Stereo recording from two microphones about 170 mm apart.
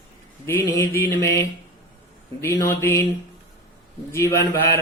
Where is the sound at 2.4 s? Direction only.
15° left (ahead or behind).